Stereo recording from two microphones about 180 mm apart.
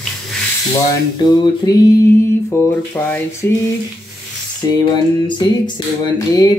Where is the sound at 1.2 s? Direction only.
25° left (ahead or behind).